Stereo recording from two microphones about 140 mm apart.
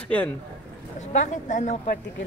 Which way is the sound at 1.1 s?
60° left (ahead or behind).